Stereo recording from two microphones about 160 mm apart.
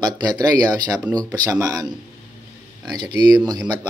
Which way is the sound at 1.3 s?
10° right (ahead or behind).